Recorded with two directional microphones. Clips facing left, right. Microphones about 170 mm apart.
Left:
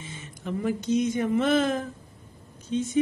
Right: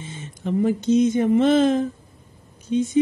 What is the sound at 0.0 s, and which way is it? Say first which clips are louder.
Speech: right 6 dB; 30° right (ahead or behind).